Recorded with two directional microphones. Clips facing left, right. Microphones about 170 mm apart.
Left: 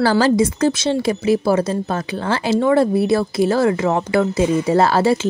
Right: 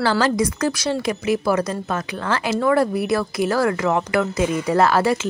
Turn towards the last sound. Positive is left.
turn(degrees=30)  # may be behind; listen again after turning